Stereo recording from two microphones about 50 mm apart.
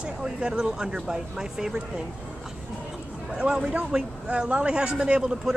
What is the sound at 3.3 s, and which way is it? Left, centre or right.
A man's voice, centre.